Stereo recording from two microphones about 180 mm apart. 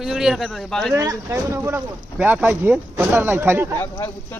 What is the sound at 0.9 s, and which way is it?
Speech, 15° right (ahead or behind).